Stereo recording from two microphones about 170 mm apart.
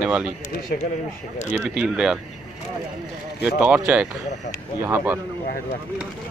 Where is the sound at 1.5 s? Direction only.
5° right (ahead or behind).